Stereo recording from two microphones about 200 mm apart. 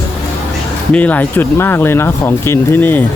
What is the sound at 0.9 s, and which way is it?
Speech, 10° left (ahead or behind).